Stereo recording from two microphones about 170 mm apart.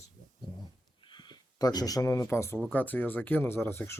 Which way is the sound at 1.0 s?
25° left (ahead or behind).